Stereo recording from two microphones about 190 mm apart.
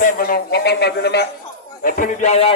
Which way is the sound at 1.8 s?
45° left (ahead or behind).